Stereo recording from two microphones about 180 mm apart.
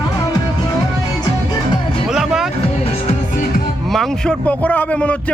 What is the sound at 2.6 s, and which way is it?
Music, 35° left (ahead or behind).